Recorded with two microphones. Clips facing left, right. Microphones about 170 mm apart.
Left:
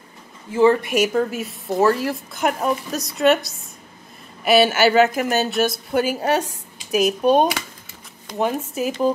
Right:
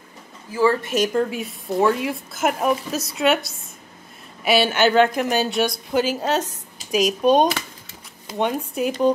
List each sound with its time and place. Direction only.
0.5 s speech: 25° left (ahead or behind)
0.8 s a woman's voice: 10° left (ahead or behind)